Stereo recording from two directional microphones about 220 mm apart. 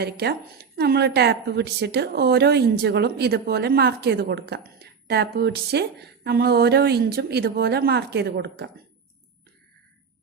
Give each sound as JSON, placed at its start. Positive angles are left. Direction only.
{"t": 0.0, "sound": "a woman's voice", "side_deg": -45}